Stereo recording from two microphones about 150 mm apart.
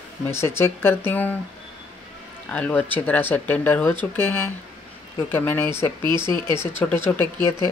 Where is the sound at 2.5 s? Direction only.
10° left (ahead or behind).